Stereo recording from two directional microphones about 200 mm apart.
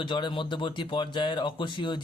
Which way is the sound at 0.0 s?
25° left (ahead or behind).